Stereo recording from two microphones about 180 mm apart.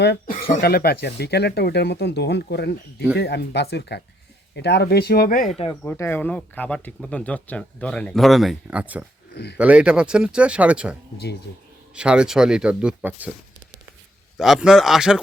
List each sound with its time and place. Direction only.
0.3 s speech: 50° left (ahead or behind)
5.8 s speech: 10° left (ahead or behind); by 9.0 s 10° right (ahead or behind)
9.3 s speech: 65° left (ahead or behind)
9.6 s speech: 5° right (ahead or behind)
11.9 s speech: 5° right (ahead or behind)
14.3 s speech: centre (ahead or behind)